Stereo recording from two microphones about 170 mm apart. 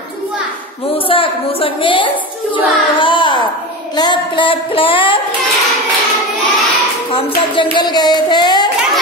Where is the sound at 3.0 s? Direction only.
30° left (ahead or behind).